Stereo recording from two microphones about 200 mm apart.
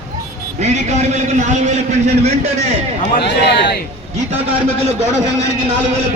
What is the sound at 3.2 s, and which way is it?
Speech, 55° left (ahead or behind).